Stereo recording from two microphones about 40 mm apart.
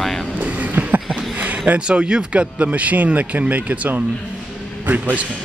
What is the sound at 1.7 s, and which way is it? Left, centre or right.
Speech, right.